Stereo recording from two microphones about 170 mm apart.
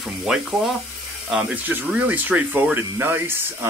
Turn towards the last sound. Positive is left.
turn(degrees=-10)  # may be behind; listen again after turning